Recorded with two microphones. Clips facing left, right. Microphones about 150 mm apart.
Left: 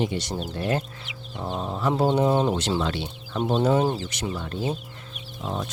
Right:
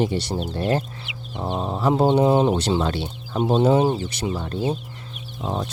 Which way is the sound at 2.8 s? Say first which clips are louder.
Right 3 dB; 35° right (ahead or behind).